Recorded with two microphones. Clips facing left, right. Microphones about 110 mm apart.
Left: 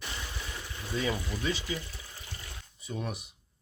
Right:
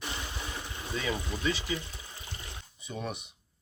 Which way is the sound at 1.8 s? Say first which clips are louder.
Even; 20° right (ahead or behind).